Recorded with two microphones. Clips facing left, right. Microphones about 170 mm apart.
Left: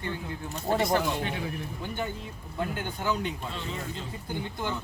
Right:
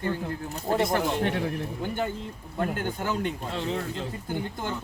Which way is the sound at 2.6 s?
50° right (ahead or behind).